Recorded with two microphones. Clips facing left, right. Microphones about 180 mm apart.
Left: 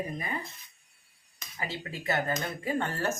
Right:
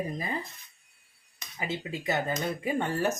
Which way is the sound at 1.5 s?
15° right (ahead or behind).